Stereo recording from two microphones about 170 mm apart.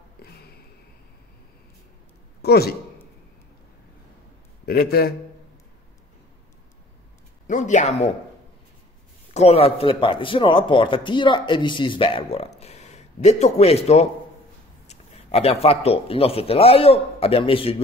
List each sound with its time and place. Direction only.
0.2 s a sound: 65° left (ahead or behind)
2.4 s a man's voice: 70° left (ahead or behind)
4.6 s a man's voice: 65° left (ahead or behind)
7.4 s speech: 45° left (ahead or behind)
9.3 s a man's voice: 35° left (ahead or behind)